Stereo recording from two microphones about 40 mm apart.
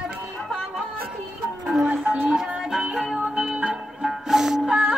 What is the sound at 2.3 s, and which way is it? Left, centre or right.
Music, centre.